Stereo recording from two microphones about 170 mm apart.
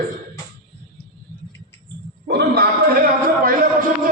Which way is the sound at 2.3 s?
70° right (ahead or behind).